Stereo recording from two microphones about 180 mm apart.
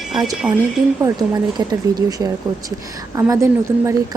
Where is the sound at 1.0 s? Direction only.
20° right (ahead or behind).